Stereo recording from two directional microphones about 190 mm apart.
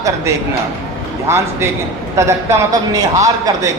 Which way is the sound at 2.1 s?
15° right (ahead or behind).